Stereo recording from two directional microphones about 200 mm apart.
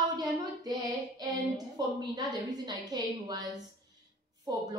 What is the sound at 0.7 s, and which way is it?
A woman's voice, 20° right (ahead or behind).